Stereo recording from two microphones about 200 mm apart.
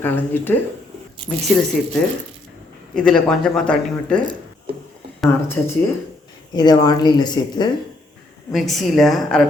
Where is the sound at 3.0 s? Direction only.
5° left (ahead or behind).